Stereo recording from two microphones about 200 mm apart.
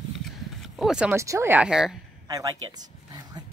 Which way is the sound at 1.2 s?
15° right (ahead or behind).